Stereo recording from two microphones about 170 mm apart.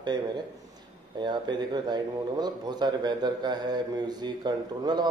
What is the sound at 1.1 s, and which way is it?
Speech, 25° right (ahead or behind).